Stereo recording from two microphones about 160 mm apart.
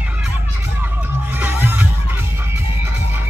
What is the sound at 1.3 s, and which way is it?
Music, 10° right (ahead or behind).